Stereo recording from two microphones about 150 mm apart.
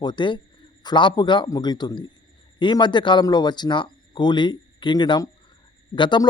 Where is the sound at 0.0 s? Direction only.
30° left (ahead or behind).